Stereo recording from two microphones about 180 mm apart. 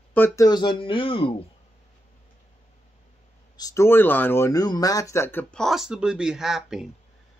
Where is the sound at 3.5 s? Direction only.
20° left (ahead or behind); by 6.9 s centre (ahead or behind).